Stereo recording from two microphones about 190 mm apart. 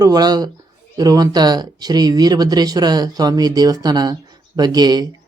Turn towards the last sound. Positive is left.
turn(degrees=-20)  # may be behind; listen again after turning